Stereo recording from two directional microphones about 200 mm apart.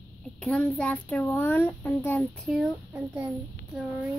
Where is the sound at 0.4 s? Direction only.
5° left (ahead or behind).